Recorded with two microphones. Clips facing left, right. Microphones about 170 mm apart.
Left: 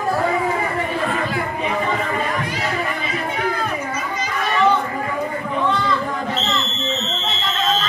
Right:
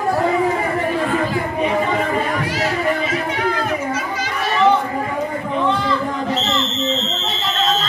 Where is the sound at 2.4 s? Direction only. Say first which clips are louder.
Right 4 dB; 85° right.